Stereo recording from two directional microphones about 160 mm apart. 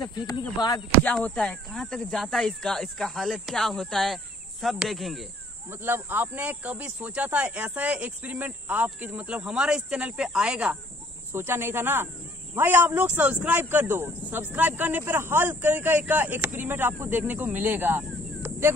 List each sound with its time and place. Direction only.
0.0 s speech: 25° left (ahead or behind)
1.0 s speech: 5° left (ahead or behind)
5.7 s speech: 15° right (ahead or behind)
11.3 s speech: 15° right (ahead or behind)